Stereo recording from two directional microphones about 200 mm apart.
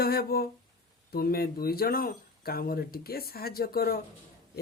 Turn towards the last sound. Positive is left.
turn(degrees=50)  # may be behind; listen again after turning